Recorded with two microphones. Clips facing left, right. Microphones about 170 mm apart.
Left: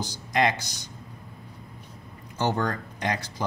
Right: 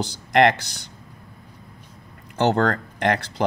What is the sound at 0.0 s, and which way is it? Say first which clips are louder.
Speech: right 7 dB; 65° right (ahead or behind).